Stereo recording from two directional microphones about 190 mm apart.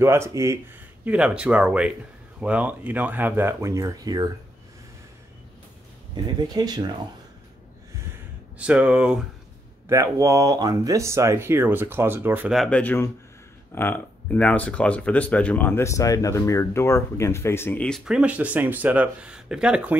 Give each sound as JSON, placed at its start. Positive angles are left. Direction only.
{"t": 0.0, "sound": "speech", "side_deg": -15}
{"t": 6.5, "sound": "speech", "side_deg": -20}
{"t": 8.5, "sound": "speech", "side_deg": -5}
{"t": 9.8, "sound": "speech", "side_deg": -15}